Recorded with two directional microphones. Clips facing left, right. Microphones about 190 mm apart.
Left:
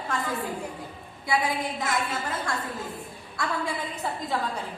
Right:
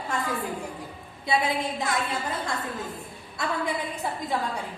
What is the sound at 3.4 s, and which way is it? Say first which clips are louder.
Speech: right 1 dB; 20° right (ahead or behind).